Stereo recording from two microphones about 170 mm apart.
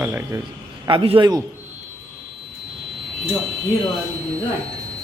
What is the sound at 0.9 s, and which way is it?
Speech, 30° right (ahead or behind).